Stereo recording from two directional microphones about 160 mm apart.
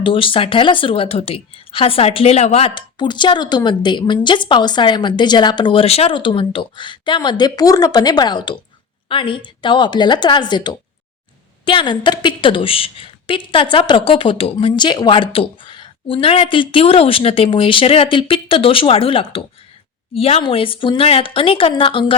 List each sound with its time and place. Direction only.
0.0 s a woman's voice: 35° left (ahead or behind)